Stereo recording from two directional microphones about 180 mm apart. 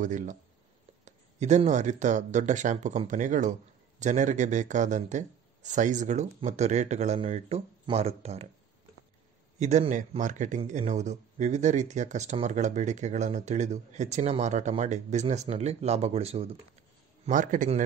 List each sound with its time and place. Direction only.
0.0 s a man's voice: 45° right (ahead or behind)
9.6 s speech: 40° right (ahead or behind)
17.3 s a man's voice: 45° right (ahead or behind)